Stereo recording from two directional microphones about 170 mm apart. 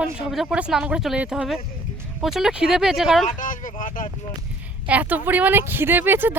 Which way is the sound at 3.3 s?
50° left (ahead or behind).